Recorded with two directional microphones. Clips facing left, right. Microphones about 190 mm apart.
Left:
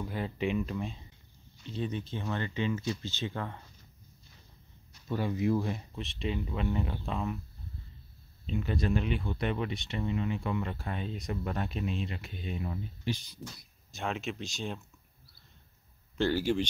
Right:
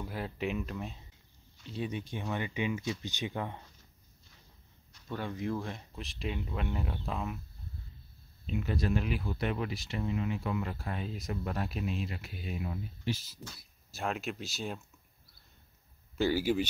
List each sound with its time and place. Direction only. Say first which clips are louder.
0.0 s speech: left 3 dB; 5° right (ahead or behind)
5.0 s speech: left 6 dB; 5° left (ahead or behind)
8.5 s speech: left 1 dB; 5° right (ahead or behind)
16.2 s speech: even; 10° right (ahead or behind)